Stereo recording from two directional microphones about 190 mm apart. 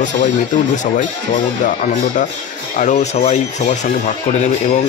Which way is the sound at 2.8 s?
40° left (ahead or behind).